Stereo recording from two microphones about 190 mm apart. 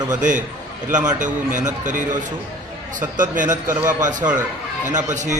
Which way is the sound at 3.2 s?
45° right (ahead or behind).